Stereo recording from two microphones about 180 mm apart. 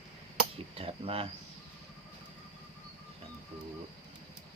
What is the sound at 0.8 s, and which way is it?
Speech, 30° right (ahead or behind).